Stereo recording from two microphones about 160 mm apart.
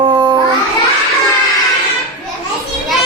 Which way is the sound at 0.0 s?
25° right (ahead or behind).